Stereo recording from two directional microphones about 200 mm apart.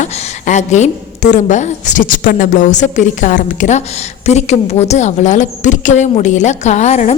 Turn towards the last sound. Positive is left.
turn(degrees=35)  # may be behind; listen again after turning